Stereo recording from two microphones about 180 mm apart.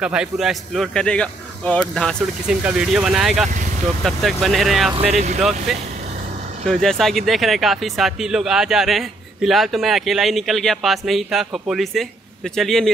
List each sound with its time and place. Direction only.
0.0 s speech: 5° right (ahead or behind)
4.9 s speech: 35° right (ahead or behind)
5.4 s speech: centre (ahead or behind)